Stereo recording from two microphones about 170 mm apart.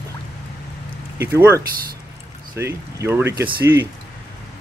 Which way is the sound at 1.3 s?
15° right (ahead or behind).